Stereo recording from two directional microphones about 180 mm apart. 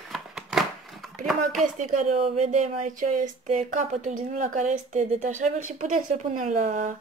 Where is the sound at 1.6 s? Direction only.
45° right (ahead or behind).